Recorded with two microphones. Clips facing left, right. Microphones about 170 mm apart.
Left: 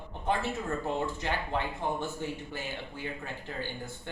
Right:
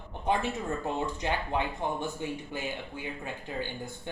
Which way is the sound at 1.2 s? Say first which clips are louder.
Right 2 dB; 15° right (ahead or behind).